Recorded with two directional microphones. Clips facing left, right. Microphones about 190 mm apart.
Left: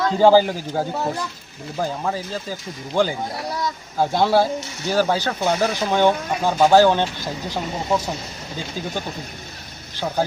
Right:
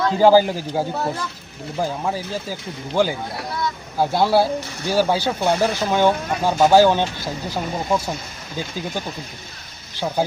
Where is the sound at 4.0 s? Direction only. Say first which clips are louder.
Even; 10° right (ahead or behind).